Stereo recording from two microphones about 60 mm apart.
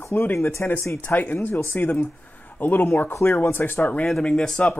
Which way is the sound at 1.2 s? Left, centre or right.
Left.